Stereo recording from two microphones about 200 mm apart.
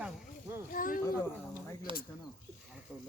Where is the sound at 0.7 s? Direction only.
45° left (ahead or behind).